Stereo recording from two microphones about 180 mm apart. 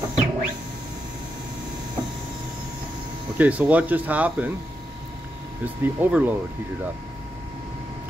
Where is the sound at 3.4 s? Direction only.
10° right (ahead or behind).